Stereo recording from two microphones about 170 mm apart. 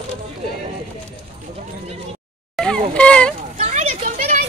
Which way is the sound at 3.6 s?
40° right (ahead or behind).